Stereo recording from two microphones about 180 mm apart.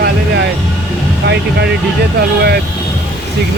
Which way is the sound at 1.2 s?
70° right (ahead or behind).